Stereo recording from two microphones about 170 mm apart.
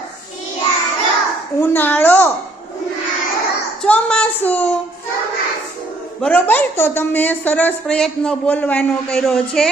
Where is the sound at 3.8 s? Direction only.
5° left (ahead or behind).